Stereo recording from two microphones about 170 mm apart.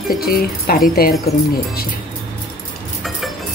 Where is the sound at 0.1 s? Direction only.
60° left (ahead or behind).